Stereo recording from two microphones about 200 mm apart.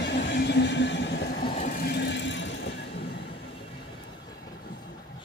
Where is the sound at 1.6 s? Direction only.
55° left (ahead or behind).